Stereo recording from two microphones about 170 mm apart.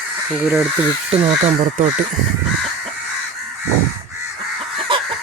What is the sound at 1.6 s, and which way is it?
Speech, 50° right (ahead or behind).